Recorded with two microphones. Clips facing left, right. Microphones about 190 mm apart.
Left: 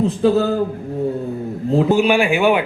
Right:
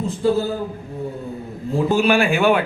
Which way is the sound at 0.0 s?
75° left (ahead or behind).